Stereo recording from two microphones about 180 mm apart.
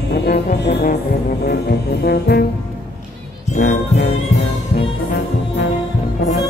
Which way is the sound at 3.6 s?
65° left (ahead or behind).